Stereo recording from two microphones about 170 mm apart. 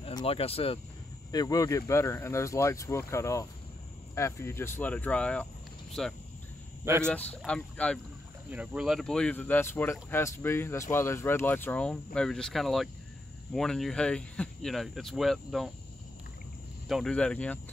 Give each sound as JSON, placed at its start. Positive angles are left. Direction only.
{"t": 0.0, "sound": "speech", "side_deg": 30}
{"t": 1.3, "sound": "speech", "side_deg": 20}
{"t": 6.8, "sound": "speech", "side_deg": -15}
{"t": 7.1, "sound": "speech", "side_deg": 5}
{"t": 8.5, "sound": "speech", "side_deg": -5}
{"t": 16.8, "sound": "speech", "side_deg": 0}